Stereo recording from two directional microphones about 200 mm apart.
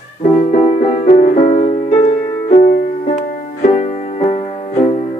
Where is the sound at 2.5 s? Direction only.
45° left (ahead or behind).